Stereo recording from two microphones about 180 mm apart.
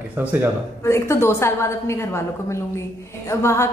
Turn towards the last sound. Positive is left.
turn(degrees=15)  # may be behind; listen again after turning